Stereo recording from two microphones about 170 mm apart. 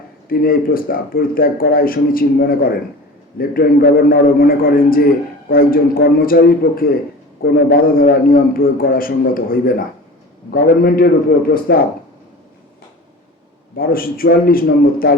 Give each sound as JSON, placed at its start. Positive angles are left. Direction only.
{"t": 0.3, "sound": "speech", "side_deg": 60}
{"t": 13.7, "sound": "speech", "side_deg": 60}